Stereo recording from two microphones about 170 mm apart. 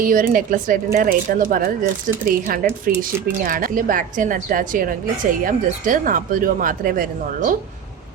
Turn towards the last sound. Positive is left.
turn(degrees=-55)  # may be behind; listen again after turning